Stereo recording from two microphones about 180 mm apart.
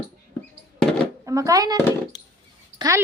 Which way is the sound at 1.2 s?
20° right (ahead or behind).